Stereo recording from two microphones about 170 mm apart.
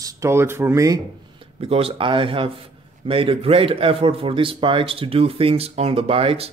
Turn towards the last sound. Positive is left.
turn(degrees=-35)  # may be behind; listen again after turning